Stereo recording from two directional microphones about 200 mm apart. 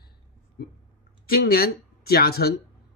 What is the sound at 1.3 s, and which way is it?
Speech, 50° left (ahead or behind).